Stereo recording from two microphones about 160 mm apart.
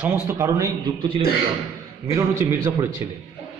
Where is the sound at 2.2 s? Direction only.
20° right (ahead or behind).